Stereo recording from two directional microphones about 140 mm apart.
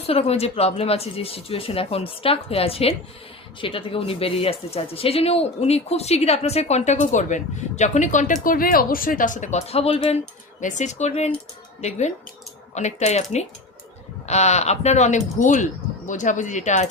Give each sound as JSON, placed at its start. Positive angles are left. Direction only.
{"t": 0.1, "sound": "speech", "side_deg": 45}
{"t": 10.6, "sound": "speech", "side_deg": 60}
{"t": 14.3, "sound": "speech", "side_deg": 55}